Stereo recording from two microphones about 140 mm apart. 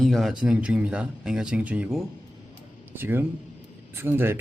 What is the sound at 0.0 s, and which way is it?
Speech, centre (ahead or behind).